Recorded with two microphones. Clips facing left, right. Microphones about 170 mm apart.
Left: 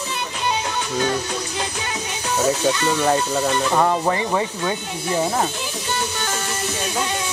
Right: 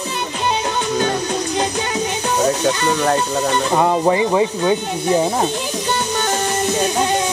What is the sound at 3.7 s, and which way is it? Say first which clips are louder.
Speech: right 6 dB; 15° right (ahead or behind).